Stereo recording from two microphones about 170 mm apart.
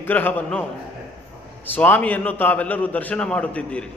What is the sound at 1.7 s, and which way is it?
A man's voice, 10° left (ahead or behind).